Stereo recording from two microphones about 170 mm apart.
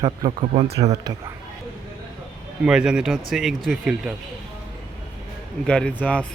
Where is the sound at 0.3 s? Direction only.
35° right (ahead or behind).